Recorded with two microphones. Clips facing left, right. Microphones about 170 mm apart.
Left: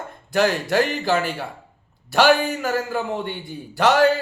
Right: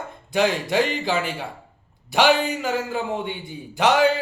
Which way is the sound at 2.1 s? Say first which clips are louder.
Left 2 dB; 15° right (ahead or behind).